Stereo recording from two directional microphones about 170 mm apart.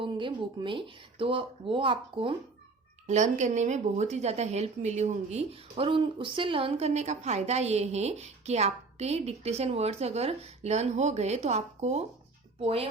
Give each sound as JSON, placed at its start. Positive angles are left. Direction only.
{"t": 0.0, "sound": "a woman's voice", "side_deg": -30}
{"t": 3.1, "sound": "a woman's voice", "side_deg": -45}